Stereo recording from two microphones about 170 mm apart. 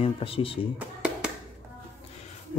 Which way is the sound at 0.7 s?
5° right (ahead or behind).